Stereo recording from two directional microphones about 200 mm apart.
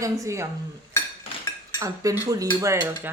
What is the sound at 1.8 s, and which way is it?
Cutlery, 15° right (ahead or behind).